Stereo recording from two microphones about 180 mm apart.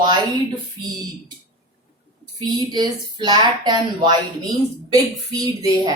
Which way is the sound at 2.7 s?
25° right (ahead or behind).